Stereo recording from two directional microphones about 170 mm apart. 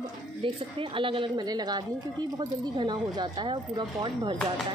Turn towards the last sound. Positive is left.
turn(degrees=-30)  # may be behind; listen again after turning